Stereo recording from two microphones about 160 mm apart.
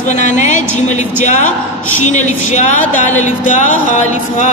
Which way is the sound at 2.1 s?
50° left (ahead or behind).